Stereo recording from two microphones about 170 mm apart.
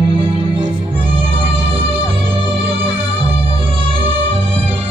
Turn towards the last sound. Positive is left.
turn(degrees=-30)  # may be behind; listen again after turning